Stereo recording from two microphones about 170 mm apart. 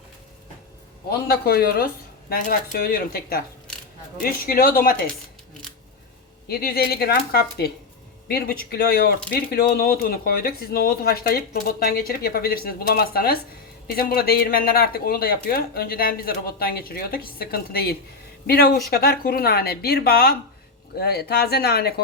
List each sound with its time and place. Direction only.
1.3 s speech: 65° left (ahead or behind)
6.5 s speech: 65° left (ahead or behind)